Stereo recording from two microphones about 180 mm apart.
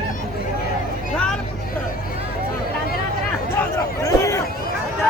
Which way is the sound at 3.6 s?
15° left (ahead or behind).